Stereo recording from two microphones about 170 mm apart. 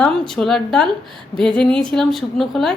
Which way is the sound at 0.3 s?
Centre (ahead or behind).